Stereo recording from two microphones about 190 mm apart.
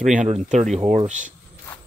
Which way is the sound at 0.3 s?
35° right (ahead or behind).